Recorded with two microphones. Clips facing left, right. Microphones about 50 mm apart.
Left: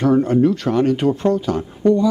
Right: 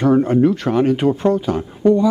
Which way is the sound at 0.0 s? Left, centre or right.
Centre.